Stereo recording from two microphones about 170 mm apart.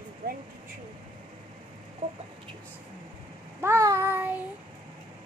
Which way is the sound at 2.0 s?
45° right (ahead or behind).